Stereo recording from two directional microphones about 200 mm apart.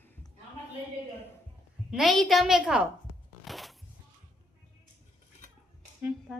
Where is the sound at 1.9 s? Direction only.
Centre (ahead or behind).